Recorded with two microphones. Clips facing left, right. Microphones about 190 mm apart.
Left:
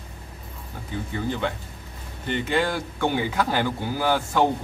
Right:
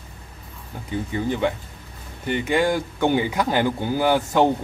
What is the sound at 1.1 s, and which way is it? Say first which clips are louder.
Speech: right 4 dB; 15° right (ahead or behind).